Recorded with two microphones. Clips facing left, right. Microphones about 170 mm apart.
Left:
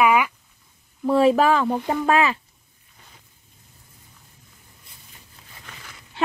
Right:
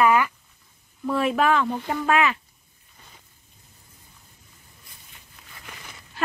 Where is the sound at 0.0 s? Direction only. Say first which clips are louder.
Left 1 dB; 10° left (ahead or behind).